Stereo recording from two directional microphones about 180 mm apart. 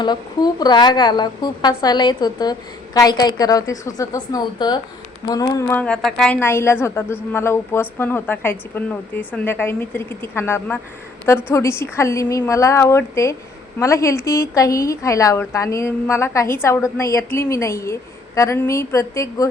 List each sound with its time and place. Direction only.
0.0 s a woman's voice: 25° left (ahead or behind)